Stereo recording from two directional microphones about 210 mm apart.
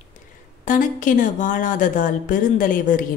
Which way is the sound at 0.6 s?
40° left (ahead or behind).